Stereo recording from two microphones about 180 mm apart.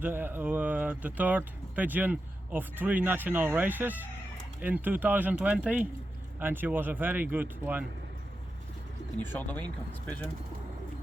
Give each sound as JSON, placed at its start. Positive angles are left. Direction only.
{"t": 0.0, "sound": "speech", "side_deg": -10}
{"t": 9.1, "sound": "speech", "side_deg": 10}